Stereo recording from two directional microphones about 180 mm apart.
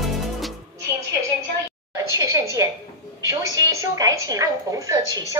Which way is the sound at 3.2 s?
20° right (ahead or behind).